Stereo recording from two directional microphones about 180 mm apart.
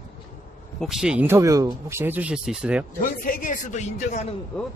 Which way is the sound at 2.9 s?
50° left (ahead or behind).